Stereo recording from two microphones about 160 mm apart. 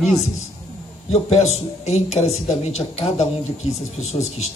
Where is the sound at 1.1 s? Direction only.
40° left (ahead or behind).